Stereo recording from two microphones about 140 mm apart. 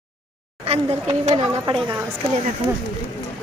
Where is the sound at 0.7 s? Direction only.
50° right (ahead or behind).